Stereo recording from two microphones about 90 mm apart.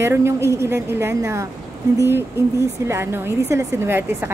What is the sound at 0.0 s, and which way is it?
Speech, 30° right (ahead or behind).